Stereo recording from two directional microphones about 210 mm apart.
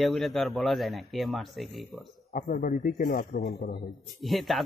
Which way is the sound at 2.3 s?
40° left (ahead or behind).